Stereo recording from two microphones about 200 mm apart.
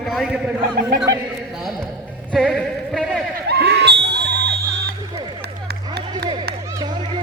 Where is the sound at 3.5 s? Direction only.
55° right (ahead or behind).